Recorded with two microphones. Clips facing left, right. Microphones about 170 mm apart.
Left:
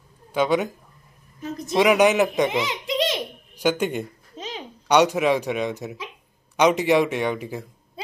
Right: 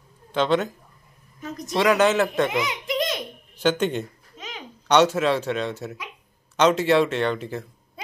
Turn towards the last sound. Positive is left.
turn(degrees=10)  # may be behind; listen again after turning